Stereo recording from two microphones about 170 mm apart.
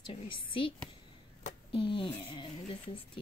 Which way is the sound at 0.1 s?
30° left (ahead or behind).